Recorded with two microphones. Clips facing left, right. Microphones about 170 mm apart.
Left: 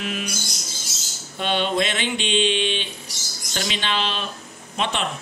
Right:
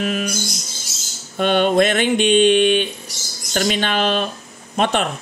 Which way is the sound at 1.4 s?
50° right (ahead or behind).